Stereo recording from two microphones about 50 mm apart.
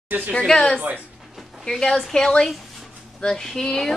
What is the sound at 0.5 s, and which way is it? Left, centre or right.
A woman's voice, centre.